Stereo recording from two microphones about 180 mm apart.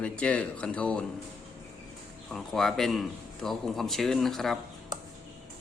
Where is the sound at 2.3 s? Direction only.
Centre (ahead or behind).